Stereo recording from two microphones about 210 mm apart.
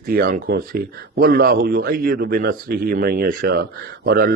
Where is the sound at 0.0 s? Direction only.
45° right (ahead or behind).